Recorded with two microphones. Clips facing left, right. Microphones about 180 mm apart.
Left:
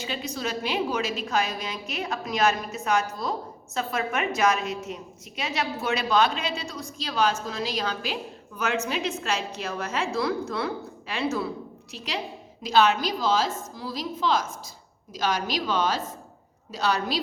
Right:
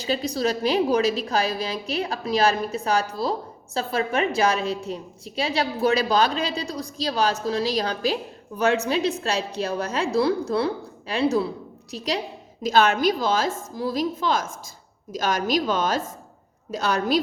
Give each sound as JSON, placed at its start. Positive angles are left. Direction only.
{"t": 0.0, "sound": "a woman's voice", "side_deg": -35}